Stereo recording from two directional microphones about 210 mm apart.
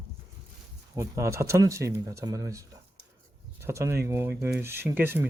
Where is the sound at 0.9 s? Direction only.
15° right (ahead or behind).